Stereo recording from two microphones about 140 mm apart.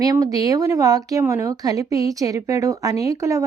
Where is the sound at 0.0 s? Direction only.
25° right (ahead or behind).